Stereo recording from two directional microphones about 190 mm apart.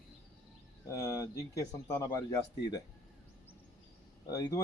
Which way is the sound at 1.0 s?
15° left (ahead or behind).